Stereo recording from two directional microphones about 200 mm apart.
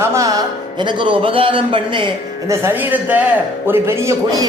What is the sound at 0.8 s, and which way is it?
A man's voice, 25° right (ahead or behind).